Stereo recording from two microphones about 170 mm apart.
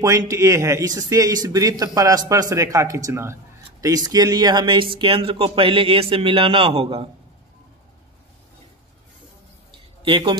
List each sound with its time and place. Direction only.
0.0 s speech: 20° right (ahead or behind); by 7.1 s 35° right (ahead or behind)
10.0 s speech: 30° right (ahead or behind)